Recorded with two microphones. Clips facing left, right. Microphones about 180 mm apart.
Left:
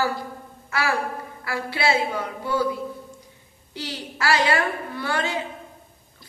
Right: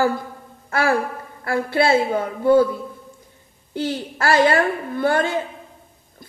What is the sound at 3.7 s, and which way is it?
A woman's voice, 50° right (ahead or behind).